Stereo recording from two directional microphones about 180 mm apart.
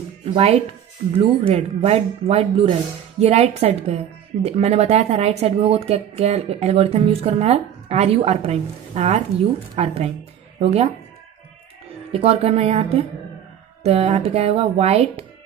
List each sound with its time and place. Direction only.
0.2 s speech: 35° right (ahead or behind)
12.1 s speech: 35° right (ahead or behind)